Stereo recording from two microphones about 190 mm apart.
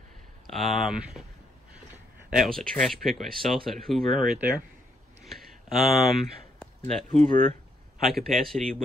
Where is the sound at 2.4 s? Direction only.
Centre (ahead or behind).